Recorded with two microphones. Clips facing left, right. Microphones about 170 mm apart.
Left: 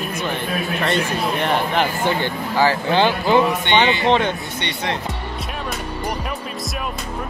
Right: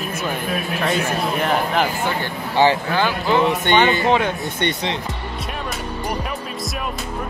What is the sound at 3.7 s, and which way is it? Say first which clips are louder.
Speech: right 3 dB; 45° right (ahead or behind).